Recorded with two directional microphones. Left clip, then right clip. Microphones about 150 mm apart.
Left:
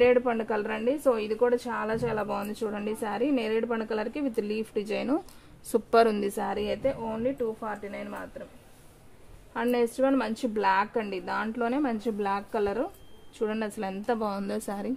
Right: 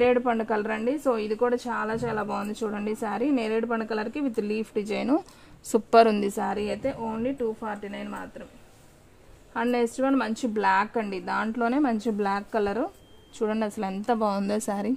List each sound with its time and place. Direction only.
0.0 s a woman's voice: 35° right (ahead or behind)
9.5 s a woman's voice: 30° right (ahead or behind); by 15.0 s 45° right (ahead or behind)